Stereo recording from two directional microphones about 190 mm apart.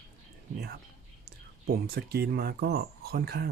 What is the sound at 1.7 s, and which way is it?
Speech, 55° right (ahead or behind).